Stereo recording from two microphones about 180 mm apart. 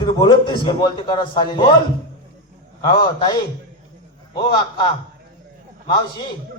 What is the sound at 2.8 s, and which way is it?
A man's voice, 25° left (ahead or behind).